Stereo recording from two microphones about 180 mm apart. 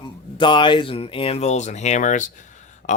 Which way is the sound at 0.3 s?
25° left (ahead or behind).